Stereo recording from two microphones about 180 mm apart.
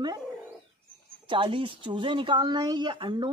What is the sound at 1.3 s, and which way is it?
Speech, 25° right (ahead or behind).